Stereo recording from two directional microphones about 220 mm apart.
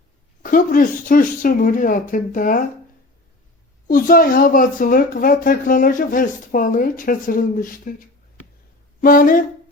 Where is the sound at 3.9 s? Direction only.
40° left (ahead or behind).